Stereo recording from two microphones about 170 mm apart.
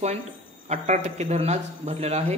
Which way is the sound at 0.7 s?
40° right (ahead or behind).